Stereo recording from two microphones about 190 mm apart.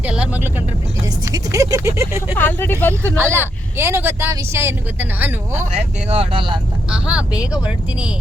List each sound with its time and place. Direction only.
0.0 s vehicle: 5° right (ahead or behind)
1.0 s vehicle: 20° right (ahead or behind)
2.4 s speech: 10° left (ahead or behind)
3.2 s speech: 10° right (ahead or behind)
5.7 s speech: 30° right (ahead or behind)
6.9 s speech: 5° right (ahead or behind)